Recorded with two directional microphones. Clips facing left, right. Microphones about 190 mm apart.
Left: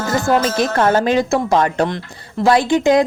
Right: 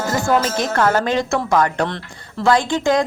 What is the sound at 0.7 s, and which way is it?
Speech, 20° left (ahead or behind).